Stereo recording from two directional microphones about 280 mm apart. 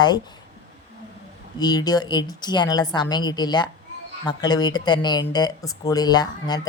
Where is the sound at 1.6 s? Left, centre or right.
Centre.